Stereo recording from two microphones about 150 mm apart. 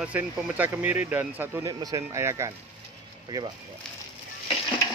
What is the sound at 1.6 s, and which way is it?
Speech, 25° right (ahead or behind).